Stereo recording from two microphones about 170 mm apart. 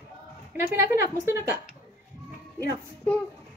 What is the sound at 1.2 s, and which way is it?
Speech, 15° right (ahead or behind).